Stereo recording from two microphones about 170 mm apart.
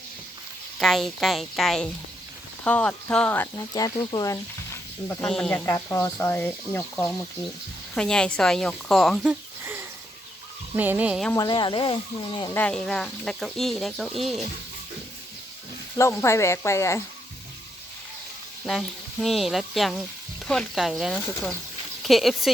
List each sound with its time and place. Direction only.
0.8 s speech: centre (ahead or behind)
3.8 s speech: 25° left (ahead or behind)
5.2 s speech: 5° left (ahead or behind)
5.5 s speech: 15° left (ahead or behind); by 9.3 s centre (ahead or behind)
9.3 s a sound: 15° right (ahead or behind)
10.8 s speech: 10° right (ahead or behind)
11.3 s speech: 25° left (ahead or behind)
12.5 s speech: 5° left (ahead or behind)
16.0 s speech: 15° left (ahead or behind)
18.6 s speech: centre (ahead or behind)